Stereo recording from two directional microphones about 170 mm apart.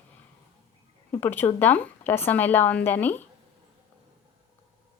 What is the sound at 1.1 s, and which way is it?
Speech, 10° left (ahead or behind).